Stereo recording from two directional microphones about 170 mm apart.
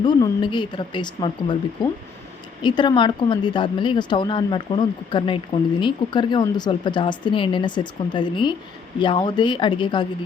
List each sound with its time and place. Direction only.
0.0 s speech: 25° left (ahead or behind)